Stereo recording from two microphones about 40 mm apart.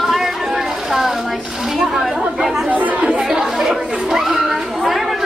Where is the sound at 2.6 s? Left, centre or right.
Right.